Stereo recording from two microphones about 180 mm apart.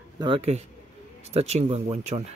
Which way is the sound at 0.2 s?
30° right (ahead or behind).